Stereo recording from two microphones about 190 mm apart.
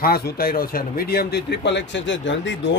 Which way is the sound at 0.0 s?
50° left (ahead or behind).